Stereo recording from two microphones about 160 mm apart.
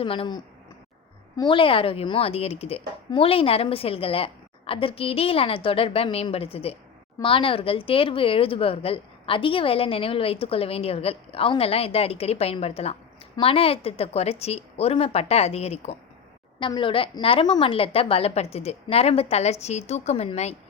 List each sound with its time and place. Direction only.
0.0 s speech: 35° left (ahead or behind)
16.6 s speech: 30° left (ahead or behind)